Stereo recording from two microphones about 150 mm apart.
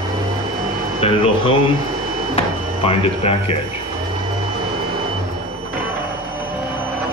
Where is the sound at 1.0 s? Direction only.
40° left (ahead or behind).